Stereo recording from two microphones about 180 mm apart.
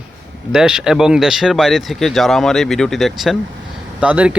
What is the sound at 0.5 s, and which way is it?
Speech, 5° right (ahead or behind).